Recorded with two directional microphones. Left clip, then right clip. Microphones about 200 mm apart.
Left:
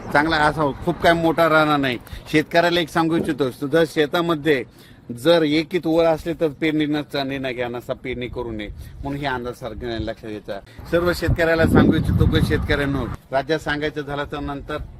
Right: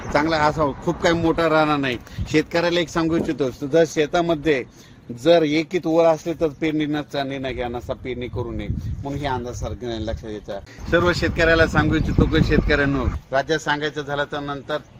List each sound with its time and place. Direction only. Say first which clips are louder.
0.1 s speech: left 1 dB; 35° left (ahead or behind); by 10.5 s 20° left (ahead or behind)
10.9 s speech: right 1 dB; 30° right (ahead or behind)
13.3 s speech: right 1 dB; 35° left (ahead or behind)